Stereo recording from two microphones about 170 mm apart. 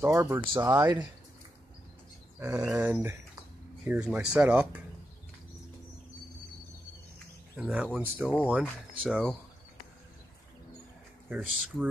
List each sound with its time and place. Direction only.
0.0 s speech: 15° right (ahead or behind)
0.7 s speech: 25° right (ahead or behind)
2.4 s speech: 10° right (ahead or behind)
7.5 s speech: 10° right (ahead or behind)
8.6 s speech: 5° left (ahead or behind)
11.2 s speech: 5° right (ahead or behind)